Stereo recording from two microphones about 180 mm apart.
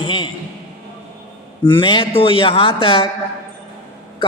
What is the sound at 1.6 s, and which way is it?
A man's voice, 25° left (ahead or behind).